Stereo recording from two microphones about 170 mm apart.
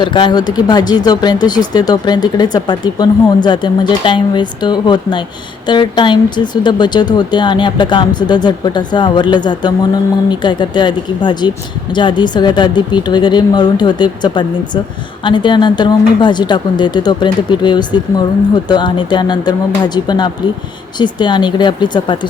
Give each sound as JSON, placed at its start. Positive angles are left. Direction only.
{"t": 0.0, "sound": "speech", "side_deg": 25}